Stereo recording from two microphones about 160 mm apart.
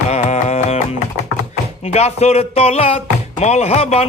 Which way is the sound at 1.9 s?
40° left (ahead or behind).